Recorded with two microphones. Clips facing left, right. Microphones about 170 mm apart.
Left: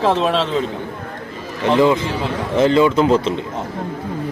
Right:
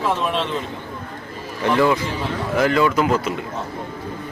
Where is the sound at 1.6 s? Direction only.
20° left (ahead or behind).